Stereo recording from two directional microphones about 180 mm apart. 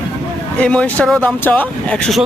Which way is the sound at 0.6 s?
5° left (ahead or behind).